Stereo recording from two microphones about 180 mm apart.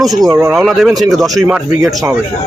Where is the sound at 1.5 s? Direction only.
10° right (ahead or behind).